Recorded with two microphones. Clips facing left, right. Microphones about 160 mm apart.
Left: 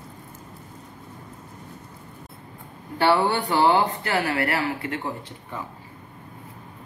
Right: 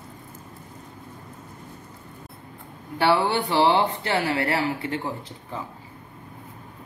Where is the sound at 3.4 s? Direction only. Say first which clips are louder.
Even; 25° right (ahead or behind).